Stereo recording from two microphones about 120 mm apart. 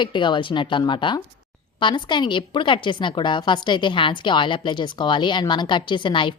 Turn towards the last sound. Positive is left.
turn(degrees=45)  # may be behind; listen again after turning